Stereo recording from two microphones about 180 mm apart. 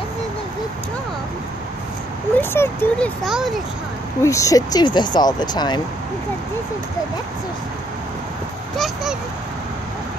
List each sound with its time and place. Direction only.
2.3 s speech: 15° left (ahead or behind)
4.2 s speech: 15° left (ahead or behind)
8.7 s a child's voice: centre (ahead or behind)